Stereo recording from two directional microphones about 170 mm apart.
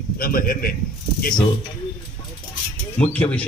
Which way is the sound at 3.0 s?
5° left (ahead or behind).